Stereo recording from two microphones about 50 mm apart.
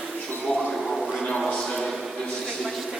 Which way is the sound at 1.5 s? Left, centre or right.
Centre.